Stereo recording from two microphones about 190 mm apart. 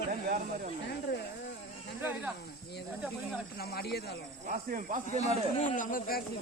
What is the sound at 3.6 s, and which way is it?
Speech, 55° left (ahead or behind).